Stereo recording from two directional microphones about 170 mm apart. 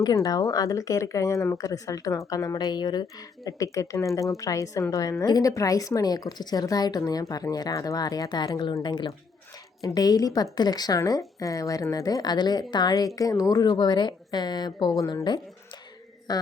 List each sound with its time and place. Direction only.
0.0 s speech: 20° left (ahead or behind)